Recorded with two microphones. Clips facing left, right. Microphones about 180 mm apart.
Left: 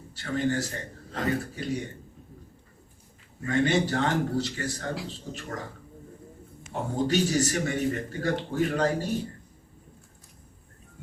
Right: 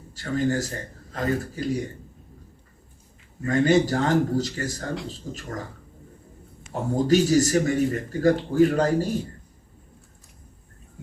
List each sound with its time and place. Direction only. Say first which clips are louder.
0.1 s a man's voice: right 3 dB; 40° right (ahead or behind)
3.4 s a man's voice: right 5 dB; 40° right (ahead or behind)
6.9 s a man's voice: right 6 dB; 40° right (ahead or behind)